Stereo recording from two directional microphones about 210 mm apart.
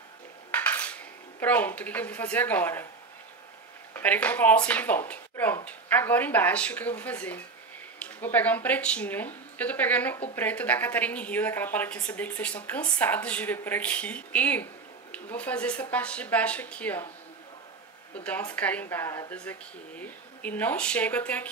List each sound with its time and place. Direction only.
0.5 s cutlery: 10° left (ahead or behind)
1.4 s speech: 10° left (ahead or behind)
3.9 s speech: 10° left (ahead or behind)
18.1 s a woman's voice: 5° left (ahead or behind)